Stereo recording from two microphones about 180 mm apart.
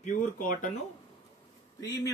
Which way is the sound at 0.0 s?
45° left (ahead or behind).